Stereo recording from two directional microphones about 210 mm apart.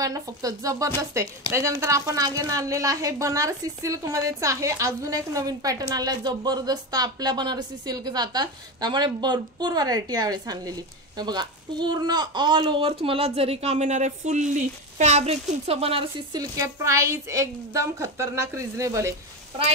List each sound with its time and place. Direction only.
0.0 s a woman's voice: 15° right (ahead or behind)
16.5 s a woman's voice: 15° right (ahead or behind)